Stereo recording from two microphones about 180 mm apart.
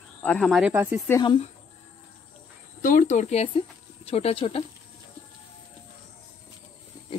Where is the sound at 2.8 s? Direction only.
45° left (ahead or behind).